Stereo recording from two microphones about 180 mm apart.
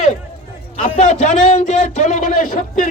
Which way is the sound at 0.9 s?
40° left (ahead or behind).